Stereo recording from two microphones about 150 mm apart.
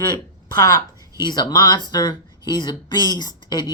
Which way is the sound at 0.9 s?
20° right (ahead or behind).